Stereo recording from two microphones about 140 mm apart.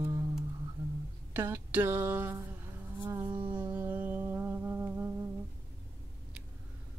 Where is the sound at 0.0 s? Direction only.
20° right (ahead or behind).